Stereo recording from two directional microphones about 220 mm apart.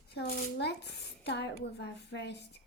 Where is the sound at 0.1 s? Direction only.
50° left (ahead or behind).